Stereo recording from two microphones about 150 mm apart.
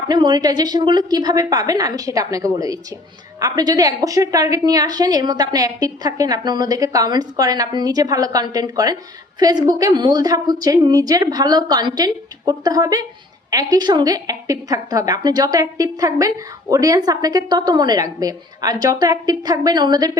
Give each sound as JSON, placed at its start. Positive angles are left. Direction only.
{"t": 0.1, "sound": "a woman's voice", "side_deg": -30}